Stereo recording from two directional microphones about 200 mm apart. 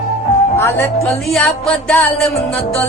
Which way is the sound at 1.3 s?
Centre (ahead or behind).